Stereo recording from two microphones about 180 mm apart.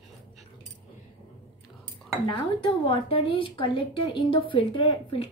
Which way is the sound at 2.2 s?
25° left (ahead or behind).